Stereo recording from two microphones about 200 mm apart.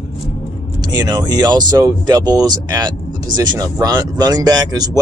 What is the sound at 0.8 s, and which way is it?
Speech, 20° right (ahead or behind).